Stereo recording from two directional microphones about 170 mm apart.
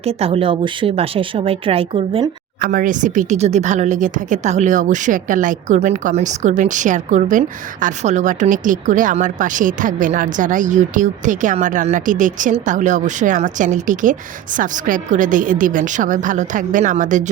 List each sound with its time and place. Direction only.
0.0 s speech: 35° right (ahead or behind)
2.6 s speech: 55° right (ahead or behind)